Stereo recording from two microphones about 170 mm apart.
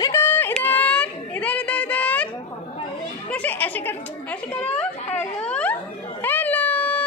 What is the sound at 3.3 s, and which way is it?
Speech, 10° left (ahead or behind).